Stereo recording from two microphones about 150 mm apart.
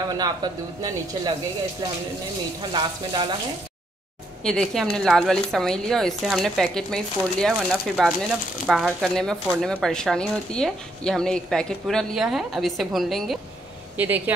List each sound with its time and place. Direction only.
0.1 s speech: 25° right (ahead or behind)
2.7 s speech: 30° right (ahead or behind)
4.5 s speech: 5° left (ahead or behind)
13.9 s speech: 10° right (ahead or behind)